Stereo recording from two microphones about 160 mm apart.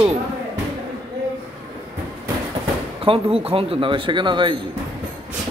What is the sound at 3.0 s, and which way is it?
Speech, 35° right (ahead or behind).